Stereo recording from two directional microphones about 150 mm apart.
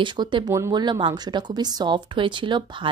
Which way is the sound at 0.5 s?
20° right (ahead or behind).